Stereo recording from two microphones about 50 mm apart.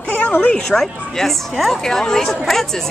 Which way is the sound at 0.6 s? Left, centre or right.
Centre.